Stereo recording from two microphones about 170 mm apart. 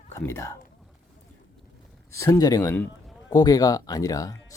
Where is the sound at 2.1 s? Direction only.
15° left (ahead or behind).